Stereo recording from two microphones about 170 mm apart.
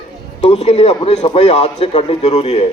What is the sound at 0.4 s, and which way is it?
A man's voice, 35° left (ahead or behind).